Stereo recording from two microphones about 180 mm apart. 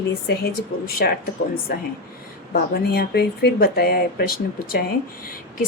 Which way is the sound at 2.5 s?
60° left (ahead or behind).